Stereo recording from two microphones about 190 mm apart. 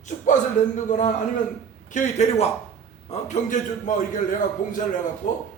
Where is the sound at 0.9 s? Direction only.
40° left (ahead or behind).